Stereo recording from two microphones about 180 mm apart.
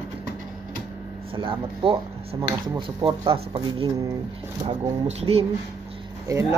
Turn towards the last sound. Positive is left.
turn(degrees=-15)  # may be behind; listen again after turning